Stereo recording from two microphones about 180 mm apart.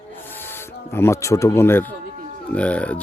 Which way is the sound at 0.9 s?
15° left (ahead or behind).